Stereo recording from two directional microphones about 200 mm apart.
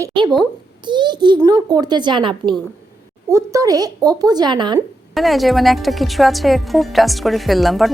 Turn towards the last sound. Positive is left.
turn(degrees=0)  # may be behind; listen again after turning